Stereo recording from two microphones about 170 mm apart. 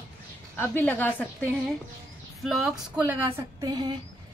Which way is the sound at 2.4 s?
Centre (ahead or behind).